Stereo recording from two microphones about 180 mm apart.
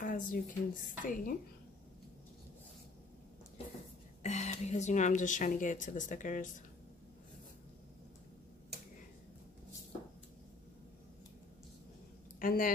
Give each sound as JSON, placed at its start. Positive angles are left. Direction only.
{"t": 0.0, "sound": "a woman's voice", "side_deg": 50}
{"t": 4.2, "sound": "a woman's voice", "side_deg": 40}
{"t": 12.4, "sound": "speech", "side_deg": 50}